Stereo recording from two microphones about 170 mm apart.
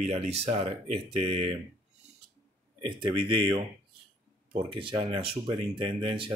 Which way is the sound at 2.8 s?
30° right (ahead or behind).